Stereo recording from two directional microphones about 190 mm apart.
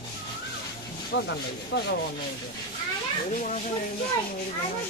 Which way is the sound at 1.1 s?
65° left (ahead or behind).